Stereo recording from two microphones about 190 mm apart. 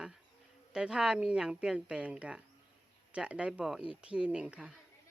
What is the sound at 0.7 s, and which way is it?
Speech, 5° right (ahead or behind).